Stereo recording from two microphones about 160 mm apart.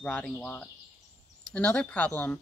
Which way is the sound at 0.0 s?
10° left (ahead or behind).